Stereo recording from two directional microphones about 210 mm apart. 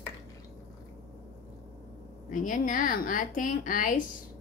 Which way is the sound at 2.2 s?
40° left (ahead or behind).